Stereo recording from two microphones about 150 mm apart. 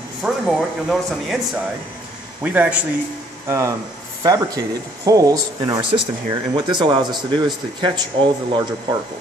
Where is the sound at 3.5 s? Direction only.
20° right (ahead or behind).